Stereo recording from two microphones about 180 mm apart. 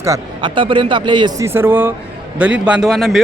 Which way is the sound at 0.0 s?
20° right (ahead or behind).